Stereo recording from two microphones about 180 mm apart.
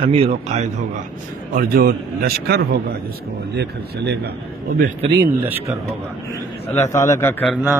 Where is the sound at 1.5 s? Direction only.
55° right (ahead or behind).